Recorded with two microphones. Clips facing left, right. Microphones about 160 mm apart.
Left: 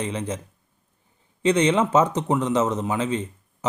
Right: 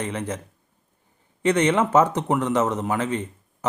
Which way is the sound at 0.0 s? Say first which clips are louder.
Even; 15° left (ahead or behind).